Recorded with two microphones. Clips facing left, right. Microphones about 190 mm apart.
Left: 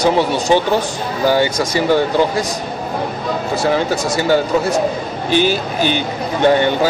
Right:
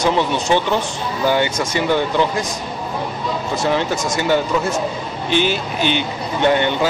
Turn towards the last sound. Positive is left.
turn(degrees=40)  # may be behind; listen again after turning